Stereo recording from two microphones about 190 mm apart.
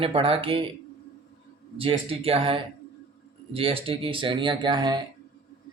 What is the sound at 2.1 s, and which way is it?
Speech, 30° right (ahead or behind).